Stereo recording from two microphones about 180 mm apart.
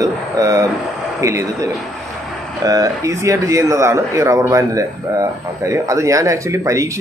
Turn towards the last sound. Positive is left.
turn(degrees=-15)  # may be behind; listen again after turning